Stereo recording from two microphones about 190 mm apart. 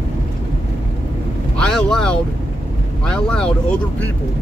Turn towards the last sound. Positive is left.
turn(degrees=5)  # may be behind; listen again after turning